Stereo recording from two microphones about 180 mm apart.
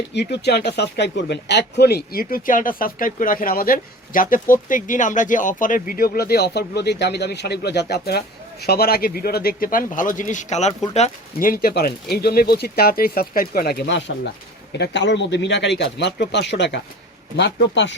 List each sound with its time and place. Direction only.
0.1 s speech: 70° left (ahead or behind)